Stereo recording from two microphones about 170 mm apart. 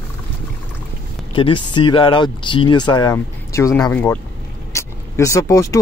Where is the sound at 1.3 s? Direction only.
30° left (ahead or behind).